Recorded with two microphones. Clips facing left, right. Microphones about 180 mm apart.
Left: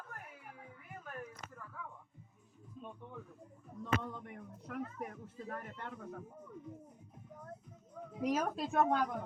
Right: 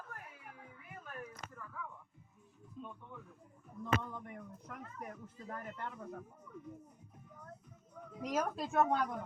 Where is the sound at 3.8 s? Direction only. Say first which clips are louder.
Even; 70° left (ahead or behind).